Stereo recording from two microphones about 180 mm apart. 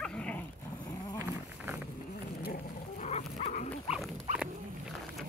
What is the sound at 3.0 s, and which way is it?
Dog, 40° left (ahead or behind).